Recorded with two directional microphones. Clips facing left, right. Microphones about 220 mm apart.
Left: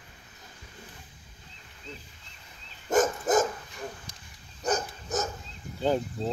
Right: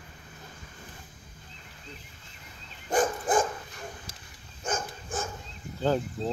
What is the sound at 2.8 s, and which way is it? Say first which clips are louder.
Dog: left 2 dB; 45° left (ahead or behind).